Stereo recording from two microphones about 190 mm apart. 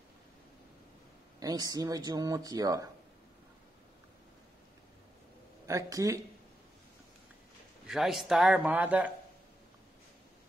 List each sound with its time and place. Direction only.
1.4 s speech: 20° right (ahead or behind)
5.7 s speech: 15° right (ahead or behind)
7.8 s a man's voice: centre (ahead or behind)